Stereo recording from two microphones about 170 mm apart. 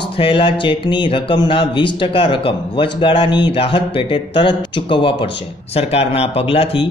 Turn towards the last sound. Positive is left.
turn(degrees=35)  # may be behind; listen again after turning